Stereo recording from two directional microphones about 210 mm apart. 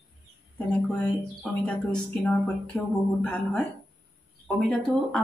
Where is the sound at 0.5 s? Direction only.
5° left (ahead or behind).